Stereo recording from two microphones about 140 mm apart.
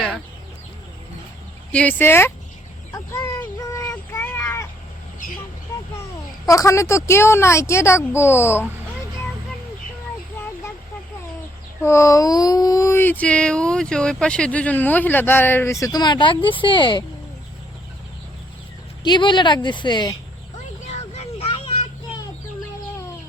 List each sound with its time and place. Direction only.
1.7 s speech: 10° left (ahead or behind)
2.9 s a sound: 20° left (ahead or behind)
6.5 s speech: 20° left (ahead or behind)
11.8 s speech: 20° left (ahead or behind); by 17.0 s 35° left (ahead or behind)
19.0 s speech: 35° left (ahead or behind)
20.8 s a sound: 50° left (ahead or behind)